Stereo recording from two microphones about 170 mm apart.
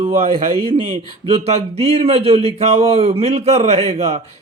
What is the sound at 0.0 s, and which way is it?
A man's voice, 40° right (ahead or behind).